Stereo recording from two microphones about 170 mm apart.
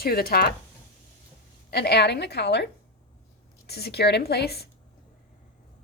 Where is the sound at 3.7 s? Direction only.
70° left (ahead or behind).